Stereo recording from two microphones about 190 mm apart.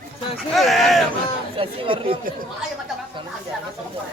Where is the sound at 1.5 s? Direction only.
30° right (ahead or behind).